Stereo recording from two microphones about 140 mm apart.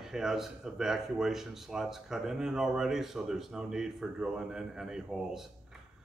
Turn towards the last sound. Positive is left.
turn(degrees=-5)  # may be behind; listen again after turning